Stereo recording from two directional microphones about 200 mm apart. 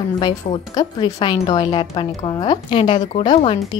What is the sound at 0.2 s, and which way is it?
A woman's voice, 20° left (ahead or behind).